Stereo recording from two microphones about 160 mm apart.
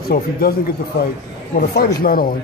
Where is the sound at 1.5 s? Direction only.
65° left (ahead or behind).